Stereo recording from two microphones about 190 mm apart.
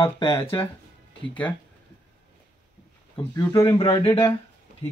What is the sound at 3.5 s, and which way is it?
Speech, 20° left (ahead or behind).